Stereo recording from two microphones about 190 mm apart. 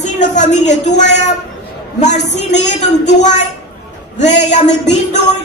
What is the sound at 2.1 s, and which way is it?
Speech, 65° left (ahead or behind).